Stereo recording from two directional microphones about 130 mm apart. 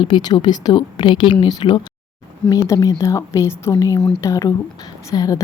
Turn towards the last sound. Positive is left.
turn(degrees=30)  # may be behind; listen again after turning